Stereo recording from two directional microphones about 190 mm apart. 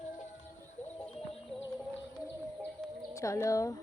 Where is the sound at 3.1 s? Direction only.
15° left (ahead or behind).